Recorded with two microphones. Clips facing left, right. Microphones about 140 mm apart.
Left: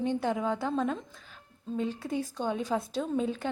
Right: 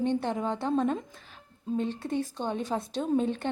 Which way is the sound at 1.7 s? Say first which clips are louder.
Right 2 dB; 5° left (ahead or behind).